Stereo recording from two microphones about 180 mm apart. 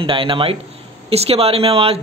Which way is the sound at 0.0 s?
30° right (ahead or behind).